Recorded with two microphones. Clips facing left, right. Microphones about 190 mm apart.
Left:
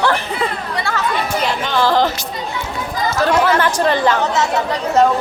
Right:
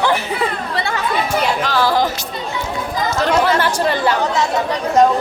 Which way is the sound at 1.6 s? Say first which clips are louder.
Left 4 dB; 10° right (ahead or behind).